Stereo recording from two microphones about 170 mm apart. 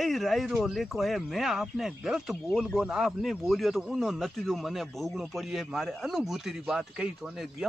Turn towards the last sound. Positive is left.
turn(degrees=-5)  # may be behind; listen again after turning